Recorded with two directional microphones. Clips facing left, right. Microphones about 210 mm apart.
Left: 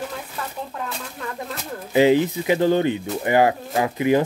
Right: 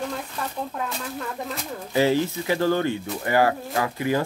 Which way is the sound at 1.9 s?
15° left (ahead or behind).